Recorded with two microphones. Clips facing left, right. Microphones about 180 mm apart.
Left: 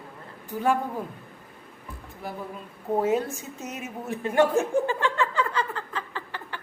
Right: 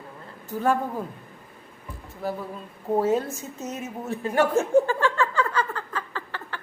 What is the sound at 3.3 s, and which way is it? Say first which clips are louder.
Chuckle: right 3 dB; 15° left (ahead or behind).